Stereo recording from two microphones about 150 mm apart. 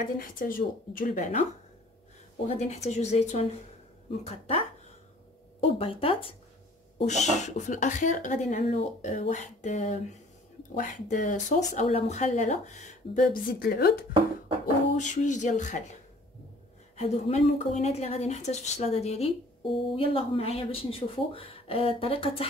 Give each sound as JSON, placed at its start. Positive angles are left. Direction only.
{"t": 0.0, "sound": "speech", "side_deg": 65}
{"t": 2.4, "sound": "a woman's voice", "side_deg": 50}
{"t": 7.1, "sound": "a woman's voice", "side_deg": 50}
{"t": 11.9, "sound": "a woman's voice", "side_deg": 45}
{"t": 15.0, "sound": "a woman's voice", "side_deg": 55}